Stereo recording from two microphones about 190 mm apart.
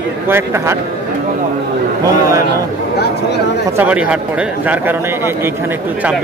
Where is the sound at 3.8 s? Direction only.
5° right (ahead or behind).